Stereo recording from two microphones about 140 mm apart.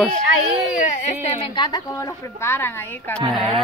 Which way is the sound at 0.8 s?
55° left (ahead or behind).